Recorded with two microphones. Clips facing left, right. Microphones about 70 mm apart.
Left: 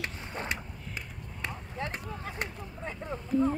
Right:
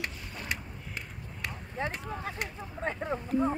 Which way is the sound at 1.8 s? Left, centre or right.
Right.